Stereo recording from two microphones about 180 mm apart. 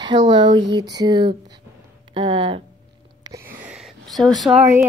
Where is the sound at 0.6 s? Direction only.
75° right (ahead or behind).